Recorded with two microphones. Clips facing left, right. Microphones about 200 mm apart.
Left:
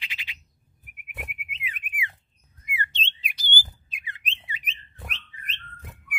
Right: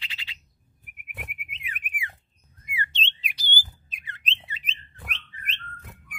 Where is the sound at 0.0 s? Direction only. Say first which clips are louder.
Left 2 dB; 15° left (ahead or behind).